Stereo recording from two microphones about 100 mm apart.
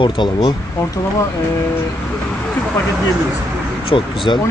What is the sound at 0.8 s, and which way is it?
Speech, 30° left (ahead or behind).